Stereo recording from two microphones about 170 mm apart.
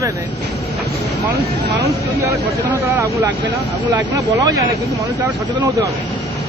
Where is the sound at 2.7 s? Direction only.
20° right (ahead or behind).